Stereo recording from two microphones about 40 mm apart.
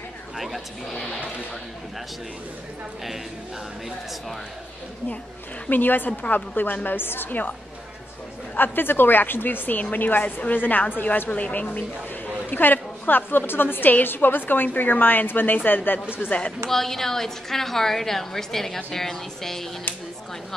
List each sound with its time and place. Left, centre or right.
0.4 s speech: centre
5.7 s a woman's voice: left
7.2 s a woman's voice: left
8.5 s a woman's voice: left
16.3 s speech: left
16.6 s a woman's voice: centre